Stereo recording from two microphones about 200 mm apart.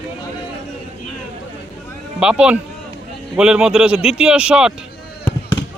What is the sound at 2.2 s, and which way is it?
Speech, 5° right (ahead or behind).